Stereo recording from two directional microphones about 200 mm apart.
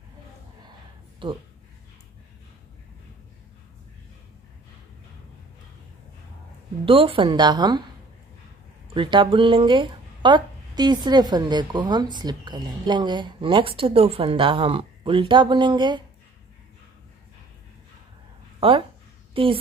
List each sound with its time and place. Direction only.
1.2 s speech: 25° right (ahead or behind)
6.9 s speech: 25° right (ahead or behind)
8.9 s speech: 25° right (ahead or behind)
18.6 s speech: 25° right (ahead or behind)